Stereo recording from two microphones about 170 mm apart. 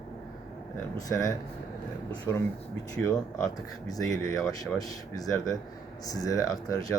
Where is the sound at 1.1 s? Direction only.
20° left (ahead or behind).